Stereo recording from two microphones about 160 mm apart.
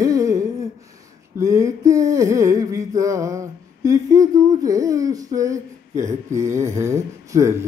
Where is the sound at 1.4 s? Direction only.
20° right (ahead or behind).